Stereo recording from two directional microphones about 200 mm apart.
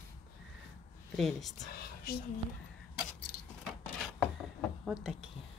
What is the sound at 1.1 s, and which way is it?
Speech, centre (ahead or behind).